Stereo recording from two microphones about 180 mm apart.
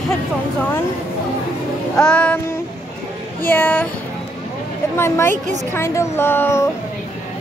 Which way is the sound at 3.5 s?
10° left (ahead or behind).